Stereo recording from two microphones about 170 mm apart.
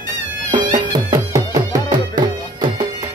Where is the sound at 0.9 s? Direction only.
25° right (ahead or behind).